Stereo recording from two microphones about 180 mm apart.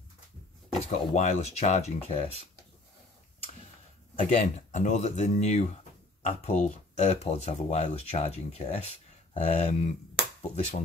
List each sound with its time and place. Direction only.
0.8 s speech: 40° left (ahead or behind)
4.2 s speech: 45° left (ahead or behind)